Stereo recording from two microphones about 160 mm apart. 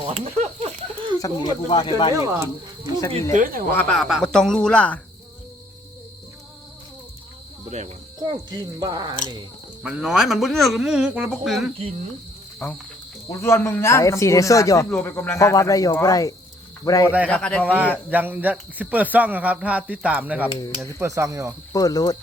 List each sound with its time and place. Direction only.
0.0 s a sound: 40° right (ahead or behind)
1.2 s speech: 25° left (ahead or behind)
2.1 s speech: 20° right (ahead or behind)
3.3 s speech: 60° right (ahead or behind)
3.8 s speech: 5° left (ahead or behind)
8.2 s speech: 25° right (ahead or behind)
9.8 s speech: 5° right (ahead or behind)
13.2 s speech: 20° left (ahead or behind)
17.2 s a man's voice: 5° left (ahead or behind)
17.6 s speech: 10° right (ahead or behind)
21.7 s speech: 20° left (ahead or behind)